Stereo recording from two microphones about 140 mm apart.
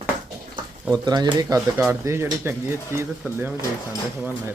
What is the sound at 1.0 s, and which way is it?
Speech, 30° right (ahead or behind).